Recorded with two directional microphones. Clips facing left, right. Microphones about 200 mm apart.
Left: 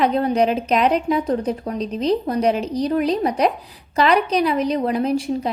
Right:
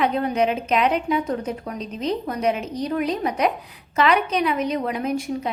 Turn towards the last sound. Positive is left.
turn(degrees=30)  # may be behind; listen again after turning